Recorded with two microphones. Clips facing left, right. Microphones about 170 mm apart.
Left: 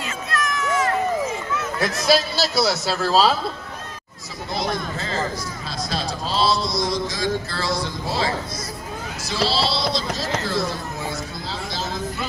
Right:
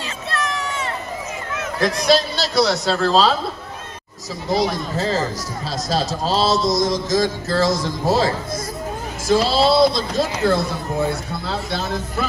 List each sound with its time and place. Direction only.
0.3 s run: 30° right (ahead or behind)
2.0 s a man's voice: 5° left (ahead or behind)
4.6 s a man's voice: 35° right (ahead or behind)
9.3 s a man's voice: 50° right (ahead or behind)